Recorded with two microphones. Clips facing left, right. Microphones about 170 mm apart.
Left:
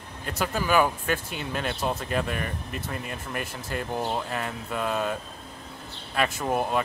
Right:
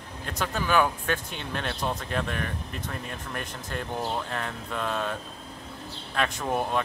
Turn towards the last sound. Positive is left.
turn(degrees=5)  # may be behind; listen again after turning